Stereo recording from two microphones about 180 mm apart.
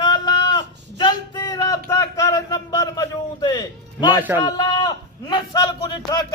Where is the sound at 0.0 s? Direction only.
25° left (ahead or behind).